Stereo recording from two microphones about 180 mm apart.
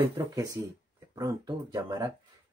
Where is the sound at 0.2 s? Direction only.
20° right (ahead or behind).